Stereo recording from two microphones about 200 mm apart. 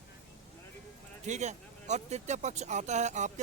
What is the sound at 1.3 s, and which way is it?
Speech, 35° right (ahead or behind).